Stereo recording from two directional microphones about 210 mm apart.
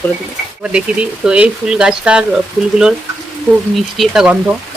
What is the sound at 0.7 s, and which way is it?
Speech, 5° right (ahead or behind).